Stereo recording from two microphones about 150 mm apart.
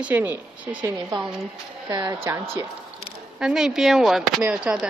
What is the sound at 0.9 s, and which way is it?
Speech, 30° right (ahead or behind).